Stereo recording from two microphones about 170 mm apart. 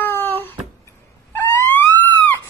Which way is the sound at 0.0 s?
10° left (ahead or behind).